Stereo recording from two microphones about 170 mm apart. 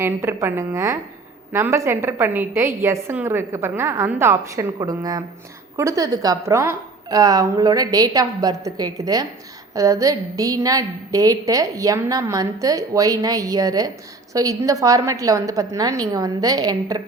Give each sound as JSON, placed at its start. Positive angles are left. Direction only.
{"t": 0.0, "sound": "a woman's voice", "side_deg": -15}